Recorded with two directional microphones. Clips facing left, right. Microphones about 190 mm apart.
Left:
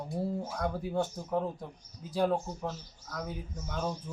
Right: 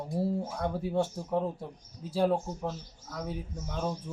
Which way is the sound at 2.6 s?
10° right (ahead or behind).